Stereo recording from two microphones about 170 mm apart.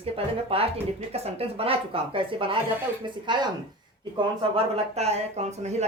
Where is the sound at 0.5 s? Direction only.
35° right (ahead or behind).